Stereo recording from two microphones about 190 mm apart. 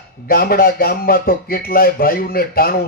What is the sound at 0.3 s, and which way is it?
Speech, 50° left (ahead or behind).